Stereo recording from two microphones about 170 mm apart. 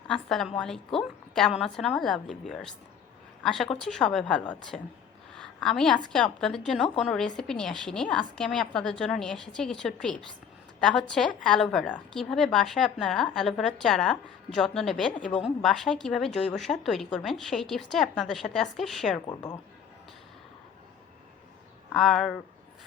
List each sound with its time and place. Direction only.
0.1 s speech: centre (ahead or behind)
5.4 s a sound: 5° left (ahead or behind)
6.1 s a woman's voice: 5° left (ahead or behind)
19.3 s speech: 25° left (ahead or behind)
21.9 s speech: centre (ahead or behind)